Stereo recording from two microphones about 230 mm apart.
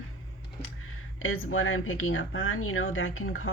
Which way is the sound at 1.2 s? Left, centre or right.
Left.